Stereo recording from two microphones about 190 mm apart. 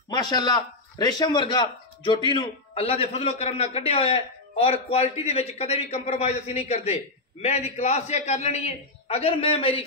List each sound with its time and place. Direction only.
0.1 s a man's voice: 20° left (ahead or behind)